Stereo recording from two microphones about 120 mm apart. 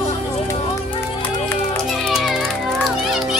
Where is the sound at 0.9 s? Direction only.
40° left (ahead or behind).